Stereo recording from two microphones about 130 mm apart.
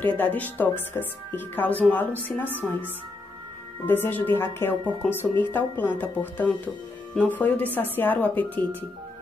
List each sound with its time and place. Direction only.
0.0 s a woman's voice: 15° left (ahead or behind)
2.5 s speech: 15° right (ahead or behind)
3.8 s a woman's voice: 15° left (ahead or behind)
5.0 s a woman's voice: 5° left (ahead or behind)